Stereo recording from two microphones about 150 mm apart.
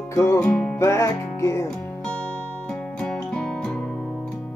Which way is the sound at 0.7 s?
15° left (ahead or behind).